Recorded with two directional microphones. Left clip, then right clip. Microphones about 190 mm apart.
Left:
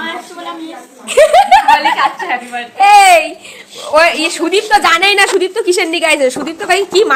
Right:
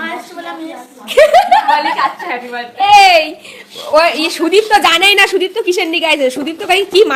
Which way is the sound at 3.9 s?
20° right (ahead or behind).